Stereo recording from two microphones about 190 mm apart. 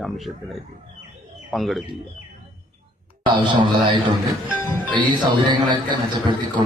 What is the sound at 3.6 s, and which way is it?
Speech, 25° right (ahead or behind).